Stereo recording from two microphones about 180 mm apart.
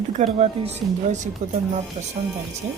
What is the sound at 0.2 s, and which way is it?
Speech, 40° right (ahead or behind).